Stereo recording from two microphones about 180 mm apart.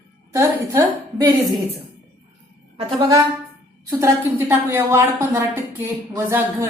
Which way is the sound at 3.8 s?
15° right (ahead or behind).